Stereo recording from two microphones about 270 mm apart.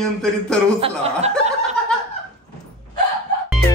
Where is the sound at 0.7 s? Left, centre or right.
Right.